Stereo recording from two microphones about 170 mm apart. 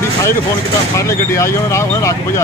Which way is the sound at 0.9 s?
15° left (ahead or behind).